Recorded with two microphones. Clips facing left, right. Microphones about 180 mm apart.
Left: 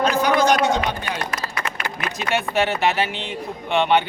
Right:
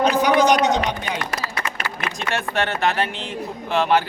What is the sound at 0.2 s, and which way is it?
Speech, 15° right (ahead or behind).